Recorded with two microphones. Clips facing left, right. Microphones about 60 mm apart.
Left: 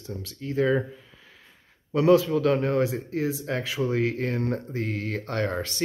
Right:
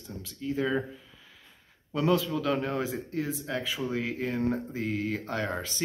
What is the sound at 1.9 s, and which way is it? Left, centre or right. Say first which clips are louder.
Speech: left 7 dB; centre.